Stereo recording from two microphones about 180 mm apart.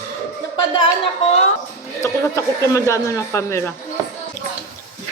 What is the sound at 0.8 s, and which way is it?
Speech, 35° left (ahead or behind).